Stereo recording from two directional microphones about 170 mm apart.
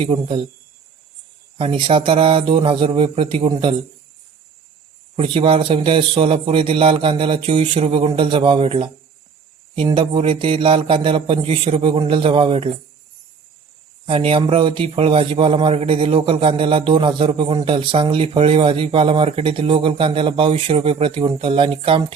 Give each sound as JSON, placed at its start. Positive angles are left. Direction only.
{"t": 0.0, "sound": "speech", "side_deg": -30}
{"t": 1.5, "sound": "speech", "side_deg": -30}
{"t": 5.1, "sound": "speech", "side_deg": -30}
{"t": 14.1, "sound": "speech", "side_deg": -30}